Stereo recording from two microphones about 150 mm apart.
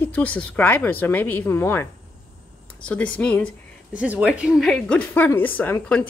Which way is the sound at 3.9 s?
10° right (ahead or behind).